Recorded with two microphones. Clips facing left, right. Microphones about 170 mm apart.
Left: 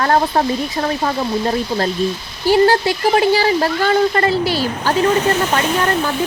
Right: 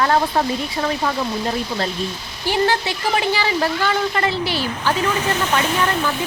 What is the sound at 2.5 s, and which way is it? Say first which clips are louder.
Speech: left 7 dB; 40° left (ahead or behind).